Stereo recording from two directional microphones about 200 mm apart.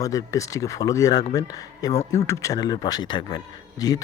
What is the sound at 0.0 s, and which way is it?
Speech, 15° left (ahead or behind).